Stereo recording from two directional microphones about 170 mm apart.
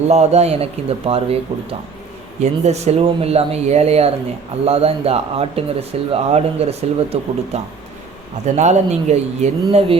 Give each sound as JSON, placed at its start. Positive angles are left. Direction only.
{"t": 0.1, "sound": "speech", "side_deg": -40}
{"t": 2.4, "sound": "speech", "side_deg": -40}